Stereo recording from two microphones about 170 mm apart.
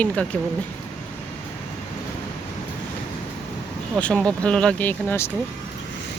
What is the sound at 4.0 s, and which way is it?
Speech, 5° left (ahead or behind).